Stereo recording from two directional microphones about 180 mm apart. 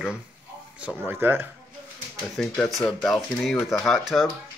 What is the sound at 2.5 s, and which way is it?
Speech, 5° left (ahead or behind).